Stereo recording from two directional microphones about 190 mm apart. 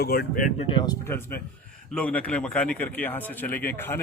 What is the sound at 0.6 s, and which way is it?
Speech, 25° left (ahead or behind).